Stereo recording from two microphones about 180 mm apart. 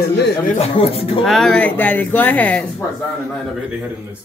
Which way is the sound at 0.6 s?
30° left (ahead or behind).